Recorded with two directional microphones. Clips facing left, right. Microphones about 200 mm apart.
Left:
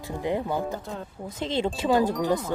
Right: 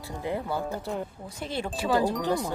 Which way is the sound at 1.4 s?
20° left (ahead or behind).